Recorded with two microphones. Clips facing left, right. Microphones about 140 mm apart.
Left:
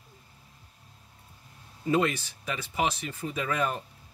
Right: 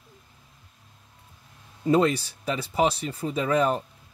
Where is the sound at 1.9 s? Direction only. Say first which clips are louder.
Right 5 dB; 35° right (ahead or behind).